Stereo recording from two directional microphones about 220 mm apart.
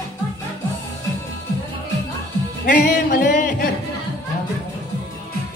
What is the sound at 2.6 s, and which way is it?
A man's voice, 35° left (ahead or behind).